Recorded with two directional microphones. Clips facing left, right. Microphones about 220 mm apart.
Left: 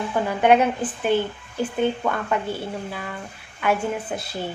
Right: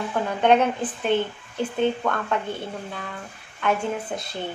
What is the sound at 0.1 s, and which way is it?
A woman's voice, 5° left (ahead or behind).